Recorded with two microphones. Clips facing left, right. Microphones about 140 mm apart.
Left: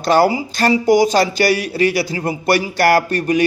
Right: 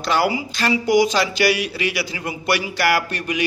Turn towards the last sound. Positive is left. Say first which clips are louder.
# left 7 dB
turn(degrees=45)  # may be behind; listen again after turning